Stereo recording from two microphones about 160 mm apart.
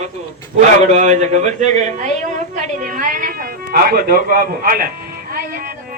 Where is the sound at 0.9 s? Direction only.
45° right (ahead or behind); by 4.9 s 65° right (ahead or behind).